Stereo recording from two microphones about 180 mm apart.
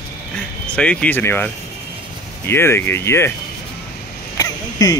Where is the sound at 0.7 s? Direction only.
5° left (ahead or behind).